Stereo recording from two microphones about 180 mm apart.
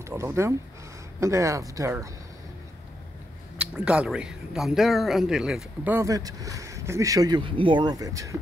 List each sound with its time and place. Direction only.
0.0 s speech: 15° right (ahead or behind)
3.5 s speech: 5° right (ahead or behind)
5.9 s speech: 20° right (ahead or behind)